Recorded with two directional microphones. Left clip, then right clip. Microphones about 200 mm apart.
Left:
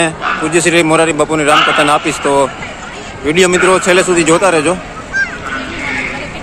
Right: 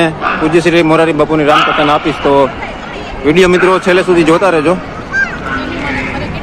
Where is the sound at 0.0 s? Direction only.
10° left (ahead or behind).